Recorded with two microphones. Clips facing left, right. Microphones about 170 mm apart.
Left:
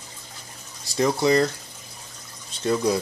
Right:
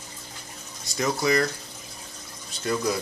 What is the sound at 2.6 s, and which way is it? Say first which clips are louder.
Speech: left 4 dB; 30° left (ahead or behind).